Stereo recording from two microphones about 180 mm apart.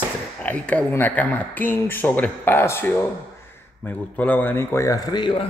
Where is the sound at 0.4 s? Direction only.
5° left (ahead or behind); by 5.5 s 25° left (ahead or behind).